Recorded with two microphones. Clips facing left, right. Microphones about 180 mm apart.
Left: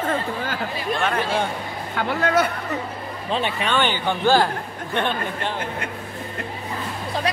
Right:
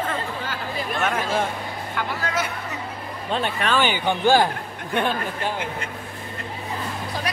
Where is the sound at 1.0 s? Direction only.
5° right (ahead or behind).